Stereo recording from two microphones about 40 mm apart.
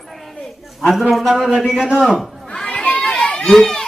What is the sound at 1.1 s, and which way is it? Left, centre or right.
A man's voice, centre.